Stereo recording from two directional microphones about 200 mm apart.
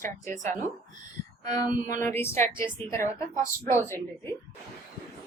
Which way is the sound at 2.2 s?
10° left (ahead or behind).